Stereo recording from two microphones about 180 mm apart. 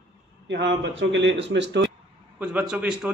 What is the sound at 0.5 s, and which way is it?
Speech, 80° right.